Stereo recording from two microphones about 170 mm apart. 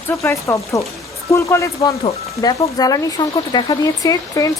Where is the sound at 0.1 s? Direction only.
15° left (ahead or behind).